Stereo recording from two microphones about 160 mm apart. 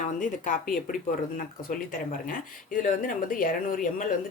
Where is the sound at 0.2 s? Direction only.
55° left (ahead or behind).